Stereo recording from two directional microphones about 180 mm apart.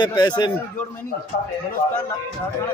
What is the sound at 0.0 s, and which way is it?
Speech, 25° left (ahead or behind).